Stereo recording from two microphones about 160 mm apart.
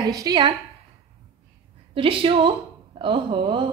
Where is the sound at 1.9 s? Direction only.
35° right (ahead or behind).